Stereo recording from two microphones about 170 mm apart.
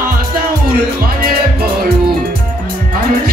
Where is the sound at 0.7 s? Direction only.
60° right (ahead or behind).